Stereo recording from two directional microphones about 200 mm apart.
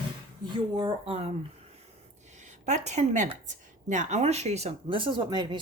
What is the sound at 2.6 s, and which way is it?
Speech, 35° right (ahead or behind).